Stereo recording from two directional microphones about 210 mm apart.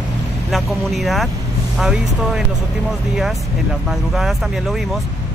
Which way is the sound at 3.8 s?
Centre (ahead or behind).